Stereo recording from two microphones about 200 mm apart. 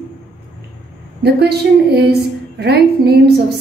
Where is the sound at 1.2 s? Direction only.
55° right (ahead or behind).